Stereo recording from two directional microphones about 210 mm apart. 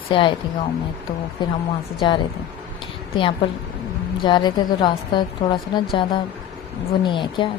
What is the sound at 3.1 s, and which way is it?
A woman's voice, 25° left (ahead or behind).